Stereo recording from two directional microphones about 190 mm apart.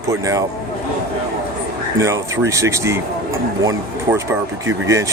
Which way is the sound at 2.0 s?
15° right (ahead or behind).